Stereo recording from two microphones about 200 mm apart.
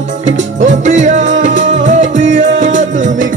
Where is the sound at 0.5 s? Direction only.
40° right (ahead or behind).